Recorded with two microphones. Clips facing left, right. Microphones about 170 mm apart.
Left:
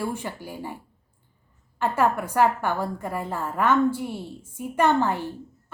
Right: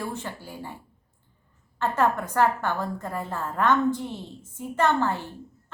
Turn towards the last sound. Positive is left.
turn(degrees=15)  # may be behind; listen again after turning